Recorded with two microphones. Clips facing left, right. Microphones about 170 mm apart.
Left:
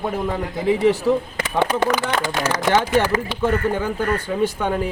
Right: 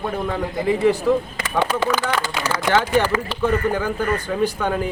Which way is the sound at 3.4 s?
20° left (ahead or behind).